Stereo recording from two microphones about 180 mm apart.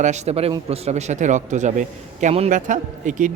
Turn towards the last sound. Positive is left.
turn(degrees=-45)  # may be behind; listen again after turning